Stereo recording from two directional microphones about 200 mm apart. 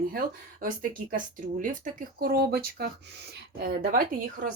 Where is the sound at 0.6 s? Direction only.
45° right (ahead or behind).